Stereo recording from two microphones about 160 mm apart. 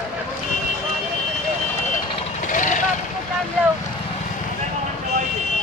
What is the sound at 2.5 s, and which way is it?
Vehicle, 50° left (ahead or behind).